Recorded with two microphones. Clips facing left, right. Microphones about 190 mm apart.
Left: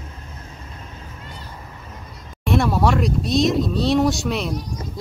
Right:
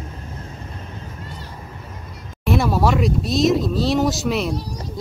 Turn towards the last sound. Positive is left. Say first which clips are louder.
# even
turn(degrees=-30)  # may be behind; listen again after turning